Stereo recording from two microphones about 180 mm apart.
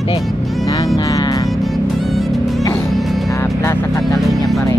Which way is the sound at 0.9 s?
20° left (ahead or behind).